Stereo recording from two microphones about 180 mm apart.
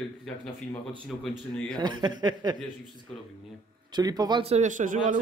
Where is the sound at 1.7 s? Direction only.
25° right (ahead or behind).